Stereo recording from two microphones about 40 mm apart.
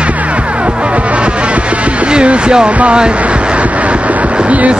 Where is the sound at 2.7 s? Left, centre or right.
Right.